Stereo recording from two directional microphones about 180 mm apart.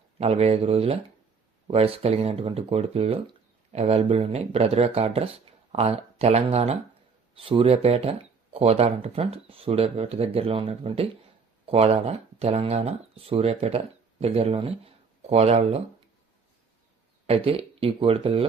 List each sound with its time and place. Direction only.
0.2 s speech: 35° right (ahead or behind)
17.2 s speech: 30° right (ahead or behind)